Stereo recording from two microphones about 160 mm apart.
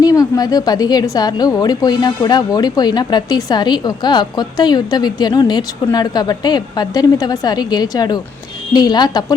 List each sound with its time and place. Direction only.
0.0 s a woman's voice: 20° left (ahead or behind)